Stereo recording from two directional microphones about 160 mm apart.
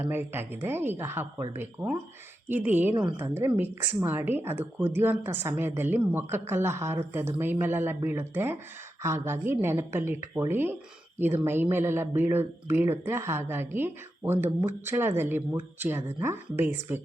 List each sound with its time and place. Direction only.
0.0 s a woman's voice: 15° right (ahead or behind)